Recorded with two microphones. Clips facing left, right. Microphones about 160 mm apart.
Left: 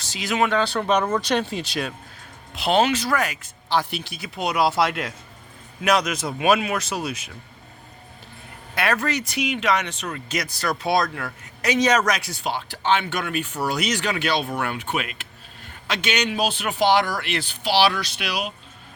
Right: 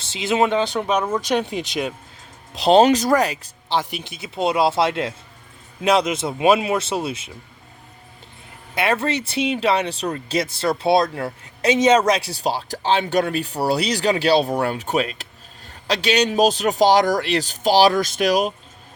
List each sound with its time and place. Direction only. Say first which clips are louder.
0.0 s speech: right 4 dB; 25° right (ahead or behind)
2.5 s speech: right 6 dB; 35° right (ahead or behind)
3.8 s speech: even; 15° right (ahead or behind)
8.7 s speech: right 3 dB; 25° right (ahead or behind); by 18.5 s 45° right (ahead or behind)